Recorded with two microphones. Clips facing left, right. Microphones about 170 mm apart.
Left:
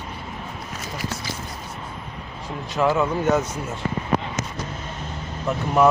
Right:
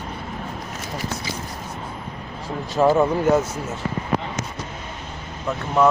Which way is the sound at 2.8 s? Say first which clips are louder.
Right 4 dB; 35° right (ahead or behind).